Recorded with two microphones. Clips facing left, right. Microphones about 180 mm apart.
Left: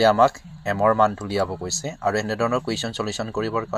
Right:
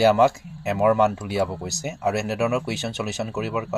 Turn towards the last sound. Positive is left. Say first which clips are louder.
# left 2 dB
turn(degrees=-15)  # may be behind; listen again after turning